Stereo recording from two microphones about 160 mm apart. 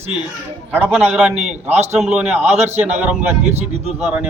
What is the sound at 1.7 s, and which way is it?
Speech, 45° right (ahead or behind).